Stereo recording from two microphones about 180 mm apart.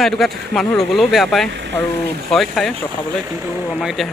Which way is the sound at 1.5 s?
80° right.